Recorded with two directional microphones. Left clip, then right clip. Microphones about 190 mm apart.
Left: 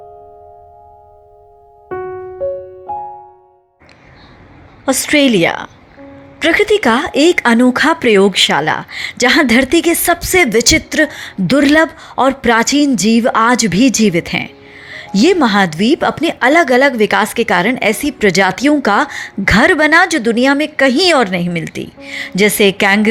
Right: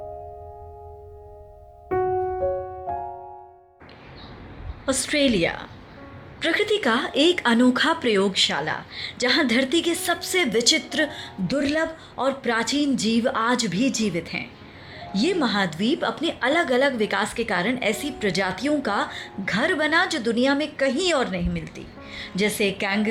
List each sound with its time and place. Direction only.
4.9 s speech: 30° left (ahead or behind)